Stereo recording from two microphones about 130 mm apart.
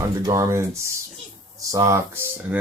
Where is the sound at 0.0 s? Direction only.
25° right (ahead or behind).